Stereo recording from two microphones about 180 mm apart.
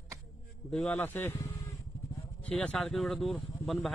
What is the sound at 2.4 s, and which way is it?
Speech, 5° left (ahead or behind).